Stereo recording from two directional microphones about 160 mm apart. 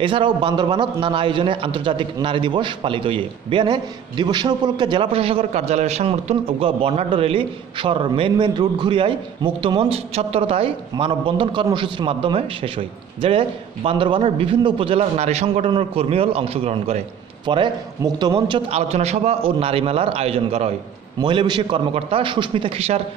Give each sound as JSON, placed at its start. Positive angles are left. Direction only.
{"t": 0.0, "sound": "a man's voice", "side_deg": -30}
{"t": 21.2, "sound": "a man's voice", "side_deg": -30}